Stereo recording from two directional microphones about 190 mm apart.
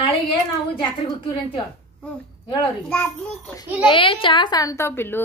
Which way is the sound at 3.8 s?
25° left (ahead or behind).